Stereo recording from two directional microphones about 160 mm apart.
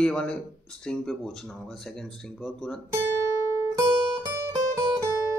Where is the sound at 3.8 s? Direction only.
30° right (ahead or behind).